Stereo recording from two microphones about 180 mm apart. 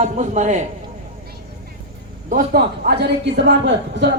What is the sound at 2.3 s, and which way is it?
A man's voice, 50° right (ahead or behind).